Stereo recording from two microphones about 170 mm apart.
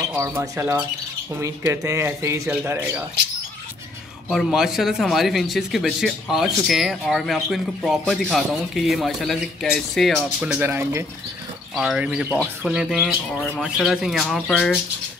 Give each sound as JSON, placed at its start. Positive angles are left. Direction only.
{"t": 0.1, "sound": "speech", "side_deg": -15}
{"t": 4.3, "sound": "speech", "side_deg": 0}
{"t": 11.7, "sound": "speech", "side_deg": -5}